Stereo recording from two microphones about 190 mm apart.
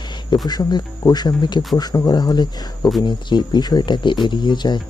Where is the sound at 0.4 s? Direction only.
20° left (ahead or behind).